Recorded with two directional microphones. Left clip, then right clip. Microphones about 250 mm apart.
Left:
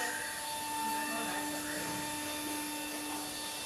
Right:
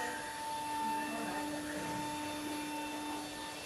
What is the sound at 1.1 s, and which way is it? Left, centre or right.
Train, centre.